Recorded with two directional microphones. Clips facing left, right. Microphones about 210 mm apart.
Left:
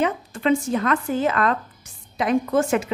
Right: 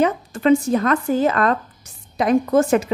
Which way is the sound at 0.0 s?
40° right (ahead or behind).